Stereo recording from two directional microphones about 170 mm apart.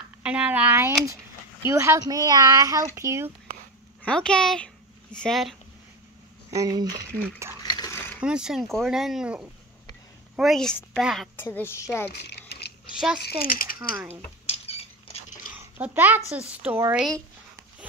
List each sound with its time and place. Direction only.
0.2 s a child's voice: 5° right (ahead or behind)
4.0 s speech: 5° left (ahead or behind)
6.5 s speech: 20° right (ahead or behind)
7.6 s a sound: 25° left (ahead or behind)
8.2 s speech: 5° right (ahead or behind)
11.3 s a woman's voice: 10° left (ahead or behind)
12.1 s a sound: 80° left
13.2 s speech: 60° left (ahead or behind)
13.9 s a child's voice: 10° right (ahead or behind)
14.5 s rodents: 35° left (ahead or behind)
15.5 s a sound: 10° right (ahead or behind)
16.3 s a child's voice: 10° right (ahead or behind)